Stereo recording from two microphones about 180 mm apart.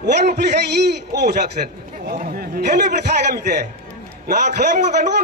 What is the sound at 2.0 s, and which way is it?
A man's voice, 50° right (ahead or behind).